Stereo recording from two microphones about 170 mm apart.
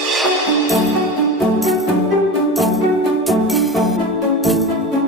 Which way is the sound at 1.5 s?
Centre (ahead or behind).